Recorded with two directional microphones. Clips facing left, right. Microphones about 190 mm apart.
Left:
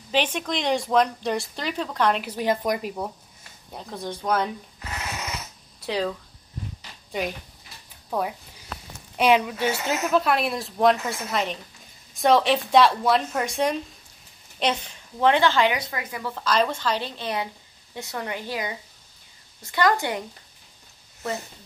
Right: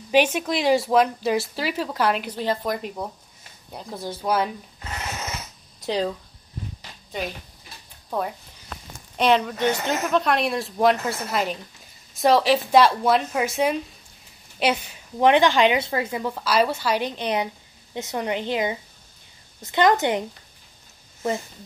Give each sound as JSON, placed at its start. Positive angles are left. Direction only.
{"t": 0.1, "sound": "speech", "side_deg": -10}
{"t": 2.2, "sound": "speech", "side_deg": 15}
{"t": 2.8, "sound": "speech", "side_deg": 5}
{"t": 5.9, "sound": "a woman's voice", "side_deg": -20}
{"t": 8.1, "sound": "a woman's voice", "side_deg": 5}